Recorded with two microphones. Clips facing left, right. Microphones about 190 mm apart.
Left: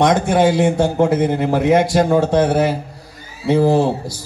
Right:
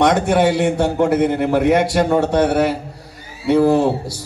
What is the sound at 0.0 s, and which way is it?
A man's voice, 65° right (ahead or behind).